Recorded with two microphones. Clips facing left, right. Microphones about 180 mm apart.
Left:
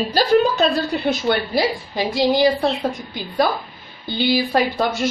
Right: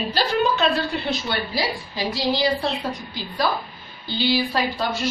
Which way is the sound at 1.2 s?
55° left (ahead or behind).